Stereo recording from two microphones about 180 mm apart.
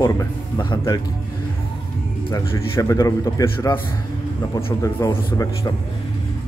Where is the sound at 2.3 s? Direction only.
15° left (ahead or behind).